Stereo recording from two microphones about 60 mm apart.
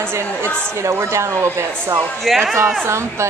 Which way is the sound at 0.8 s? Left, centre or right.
Right.